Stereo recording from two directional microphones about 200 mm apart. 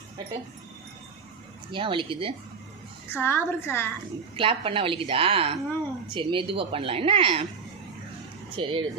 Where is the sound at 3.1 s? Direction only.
10° left (ahead or behind).